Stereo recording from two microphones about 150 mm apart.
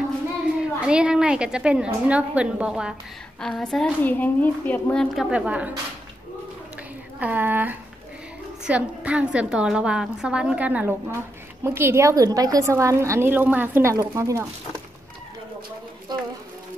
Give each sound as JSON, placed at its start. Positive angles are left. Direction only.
{"t": 0.7, "sound": "a woman's voice", "side_deg": -5}
{"t": 5.1, "sound": "a woman's voice", "side_deg": -5}
{"t": 7.2, "sound": "a woman's voice", "side_deg": -10}